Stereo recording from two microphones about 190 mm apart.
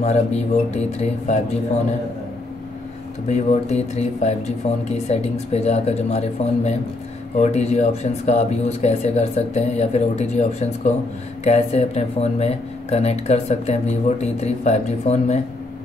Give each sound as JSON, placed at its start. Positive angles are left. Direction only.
{"t": 0.0, "sound": "speech", "side_deg": 35}
{"t": 3.3, "sound": "speech", "side_deg": 35}